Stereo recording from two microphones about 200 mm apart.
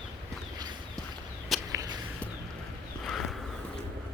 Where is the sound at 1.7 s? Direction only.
15° right (ahead or behind).